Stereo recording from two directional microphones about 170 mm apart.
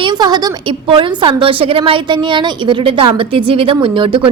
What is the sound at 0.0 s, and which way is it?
A woman's voice, 25° right (ahead or behind).